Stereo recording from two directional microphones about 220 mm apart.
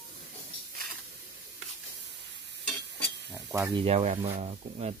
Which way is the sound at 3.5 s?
15° right (ahead or behind).